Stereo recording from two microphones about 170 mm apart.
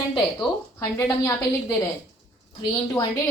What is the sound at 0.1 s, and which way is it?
A woman's voice, 20° left (ahead or behind).